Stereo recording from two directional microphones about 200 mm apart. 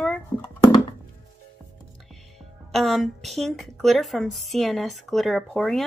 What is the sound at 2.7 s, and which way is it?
Speech, centre (ahead or behind).